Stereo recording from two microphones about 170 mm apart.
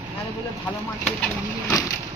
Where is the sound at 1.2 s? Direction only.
15° left (ahead or behind).